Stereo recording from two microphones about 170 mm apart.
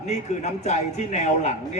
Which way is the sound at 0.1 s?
40° left (ahead or behind).